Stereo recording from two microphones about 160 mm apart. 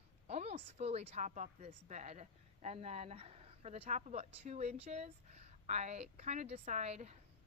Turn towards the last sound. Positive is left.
turn(degrees=-45)  # may be behind; listen again after turning